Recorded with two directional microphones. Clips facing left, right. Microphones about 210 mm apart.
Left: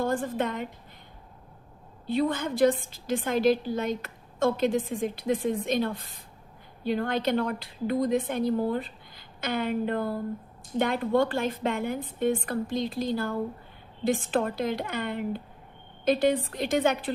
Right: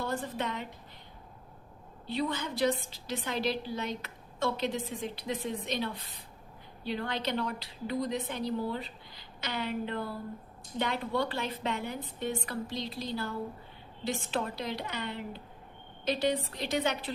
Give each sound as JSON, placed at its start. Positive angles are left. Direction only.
{"t": 0.0, "sound": "a woman's voice", "side_deg": 50}
{"t": 2.0, "sound": "a woman's voice", "side_deg": 50}